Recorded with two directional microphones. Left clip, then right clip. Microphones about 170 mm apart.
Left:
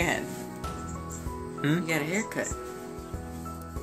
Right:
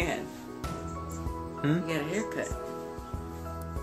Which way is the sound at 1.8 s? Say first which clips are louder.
Left 2 dB; 35° left (ahead or behind).